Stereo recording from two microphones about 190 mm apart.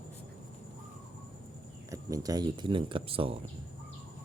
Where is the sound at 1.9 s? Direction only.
20° right (ahead or behind).